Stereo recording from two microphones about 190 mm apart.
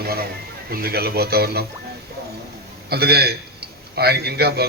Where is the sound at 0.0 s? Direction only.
55° right (ahead or behind).